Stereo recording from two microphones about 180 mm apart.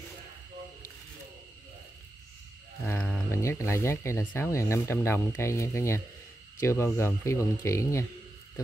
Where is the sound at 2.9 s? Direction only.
10° left (ahead or behind).